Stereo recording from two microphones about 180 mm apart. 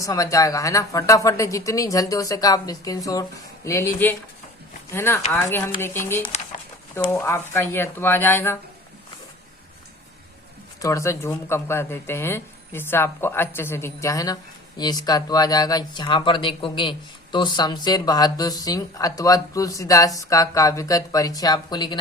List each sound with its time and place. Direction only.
0.0 s a woman's voice: 15° left (ahead or behind)
7.3 s a woman's voice: 15° left (ahead or behind)
10.8 s a woman's voice: 15° left (ahead or behind)